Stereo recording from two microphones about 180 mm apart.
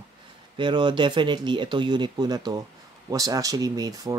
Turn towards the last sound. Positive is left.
turn(degrees=-20)  # may be behind; listen again after turning